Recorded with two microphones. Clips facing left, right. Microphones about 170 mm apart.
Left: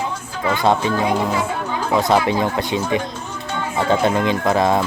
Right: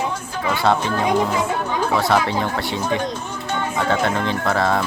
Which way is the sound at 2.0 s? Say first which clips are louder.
Left 5 dB; 20° left (ahead or behind).